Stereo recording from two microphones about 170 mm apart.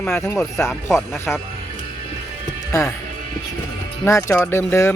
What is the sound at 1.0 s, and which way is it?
Speech, 15° left (ahead or behind).